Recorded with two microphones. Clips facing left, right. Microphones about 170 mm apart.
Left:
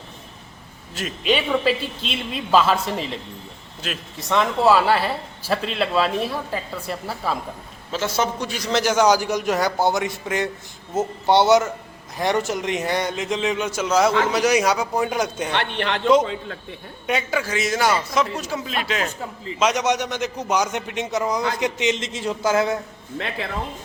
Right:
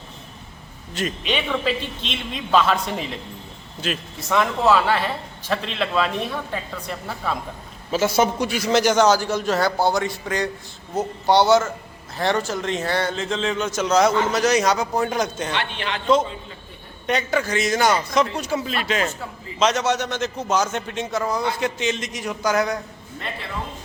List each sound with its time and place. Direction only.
0.9 s a man's voice: 5° left (ahead or behind)
4.6 s a man's voice: 10° left (ahead or behind)
7.9 s a man's voice: 10° right (ahead or behind); by 15.5 s 10° left (ahead or behind)
15.5 s a man's voice: 55° left (ahead or behind)
16.2 s a man's voice: 80° left
17.1 s a man's voice: 5° left (ahead or behind)
19.5 s a man's voice: 10° left (ahead or behind)
23.1 s a man's voice: 80° left